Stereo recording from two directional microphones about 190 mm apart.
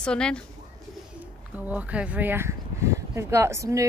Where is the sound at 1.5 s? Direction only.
10° right (ahead or behind).